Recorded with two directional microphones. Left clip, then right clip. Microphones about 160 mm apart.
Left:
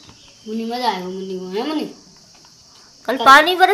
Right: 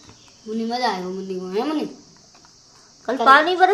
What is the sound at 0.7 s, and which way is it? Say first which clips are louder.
A child's voice: left 2 dB; 5° right (ahead or behind).